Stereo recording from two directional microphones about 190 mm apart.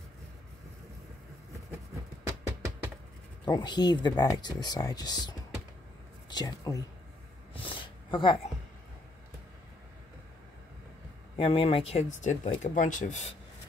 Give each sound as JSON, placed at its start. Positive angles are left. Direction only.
{"t": 2.2, "sound": "music", "side_deg": -15}
{"t": 3.4, "sound": "speech", "side_deg": 20}
{"t": 6.3, "sound": "speech", "side_deg": 20}
{"t": 7.5, "sound": "a sound", "side_deg": 25}
{"t": 11.3, "sound": "speech", "side_deg": 30}